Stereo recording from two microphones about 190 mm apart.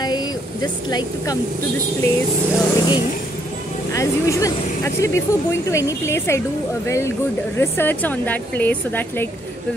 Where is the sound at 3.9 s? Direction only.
15° left (ahead or behind).